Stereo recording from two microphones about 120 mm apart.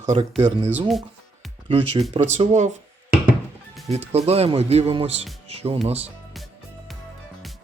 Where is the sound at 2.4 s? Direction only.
75° right (ahead or behind).